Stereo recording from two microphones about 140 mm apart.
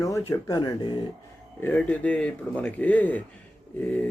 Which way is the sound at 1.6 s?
10° left (ahead or behind).